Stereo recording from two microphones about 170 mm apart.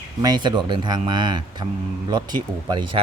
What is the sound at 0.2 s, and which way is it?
Speech, 25° right (ahead or behind).